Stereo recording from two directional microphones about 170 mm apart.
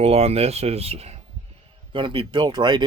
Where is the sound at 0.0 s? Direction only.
40° right (ahead or behind).